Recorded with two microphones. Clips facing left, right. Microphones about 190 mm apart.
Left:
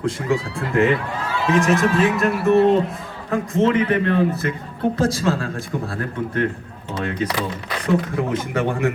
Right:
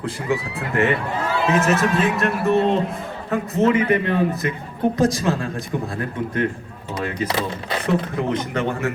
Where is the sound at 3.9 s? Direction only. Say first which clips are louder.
Left 1 dB; 15° right (ahead or behind).